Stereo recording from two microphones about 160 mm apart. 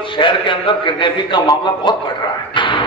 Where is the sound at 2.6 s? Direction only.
30° left (ahead or behind).